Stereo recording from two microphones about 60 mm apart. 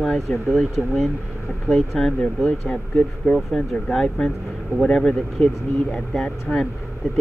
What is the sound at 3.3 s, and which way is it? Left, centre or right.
Speech, centre.